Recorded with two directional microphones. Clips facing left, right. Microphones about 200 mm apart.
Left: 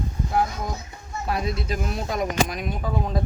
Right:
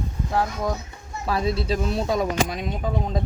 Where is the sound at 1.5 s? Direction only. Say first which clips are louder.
Right 4 dB; 30° right (ahead or behind).